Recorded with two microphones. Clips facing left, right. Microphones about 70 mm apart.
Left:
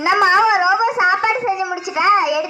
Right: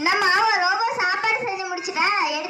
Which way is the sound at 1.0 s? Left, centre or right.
Left.